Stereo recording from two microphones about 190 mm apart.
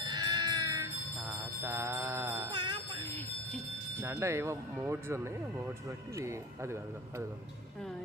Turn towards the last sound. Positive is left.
turn(degrees=-15)  # may be behind; listen again after turning